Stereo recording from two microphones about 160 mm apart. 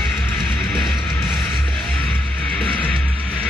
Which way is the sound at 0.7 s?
Centre (ahead or behind).